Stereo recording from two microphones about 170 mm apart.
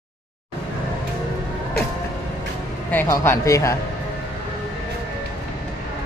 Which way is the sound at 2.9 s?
15° left (ahead or behind).